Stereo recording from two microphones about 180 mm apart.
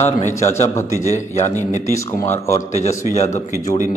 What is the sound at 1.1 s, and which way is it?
Speech, 40° left (ahead or behind).